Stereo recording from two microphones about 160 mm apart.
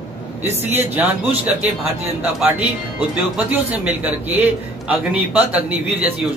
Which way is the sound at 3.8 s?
10° right (ahead or behind).